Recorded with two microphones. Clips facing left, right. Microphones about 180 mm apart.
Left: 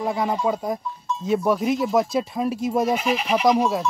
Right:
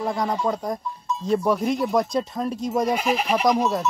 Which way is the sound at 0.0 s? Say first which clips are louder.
Left 1 dB; 5° left (ahead or behind).